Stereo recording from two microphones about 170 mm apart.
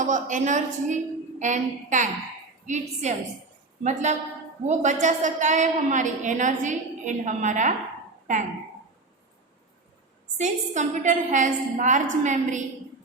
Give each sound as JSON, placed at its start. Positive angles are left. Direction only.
{"t": 0.0, "sound": "a woman's voice", "side_deg": -45}
{"t": 10.3, "sound": "a woman's voice", "side_deg": -45}